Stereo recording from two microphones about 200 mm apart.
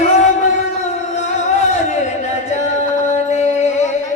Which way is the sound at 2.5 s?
35° left (ahead or behind).